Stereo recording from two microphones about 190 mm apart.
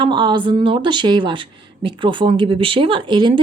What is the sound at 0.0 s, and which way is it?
Speech, 25° right (ahead or behind).